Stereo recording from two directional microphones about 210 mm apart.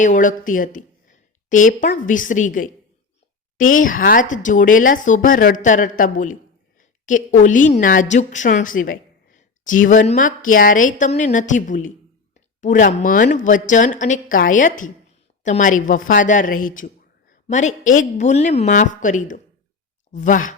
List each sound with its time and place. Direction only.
0.0 s a woman's voice: 35° left (ahead or behind)